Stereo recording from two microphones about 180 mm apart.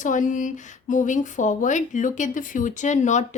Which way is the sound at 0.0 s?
45° left (ahead or behind).